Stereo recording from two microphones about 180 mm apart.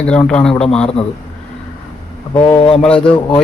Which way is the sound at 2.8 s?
5° left (ahead or behind).